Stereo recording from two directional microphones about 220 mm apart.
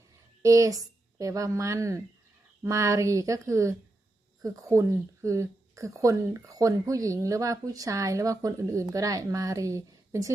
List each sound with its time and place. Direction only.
0.4 s a woman's voice: 15° right (ahead or behind)